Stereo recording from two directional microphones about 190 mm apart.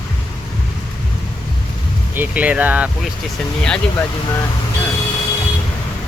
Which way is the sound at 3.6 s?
5° left (ahead or behind).